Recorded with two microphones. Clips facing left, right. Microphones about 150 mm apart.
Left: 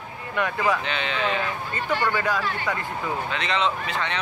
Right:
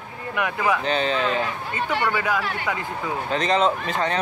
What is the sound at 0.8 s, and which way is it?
Speech, 40° right (ahead or behind).